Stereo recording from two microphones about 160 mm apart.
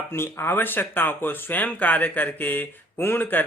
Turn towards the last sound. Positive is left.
turn(degrees=10)  # may be behind; listen again after turning